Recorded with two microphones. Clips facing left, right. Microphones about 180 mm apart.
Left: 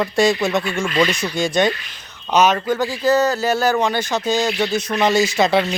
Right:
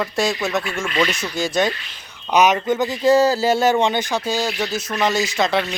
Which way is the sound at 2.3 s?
15° right (ahead or behind).